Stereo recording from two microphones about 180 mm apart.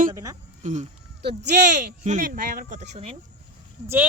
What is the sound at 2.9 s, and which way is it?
Speech, 35° right (ahead or behind).